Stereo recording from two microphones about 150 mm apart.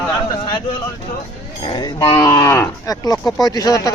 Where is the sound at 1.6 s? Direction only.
30° left (ahead or behind).